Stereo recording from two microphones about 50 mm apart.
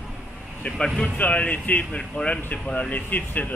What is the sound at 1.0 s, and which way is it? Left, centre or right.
Speech, left.